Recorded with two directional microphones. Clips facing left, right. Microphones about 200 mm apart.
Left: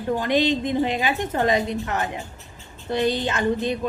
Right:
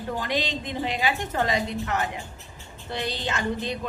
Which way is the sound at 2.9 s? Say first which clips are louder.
Left 9 dB; 50° left (ahead or behind).